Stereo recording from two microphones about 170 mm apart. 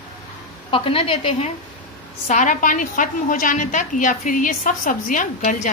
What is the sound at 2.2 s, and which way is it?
A woman's voice, 50° left (ahead or behind).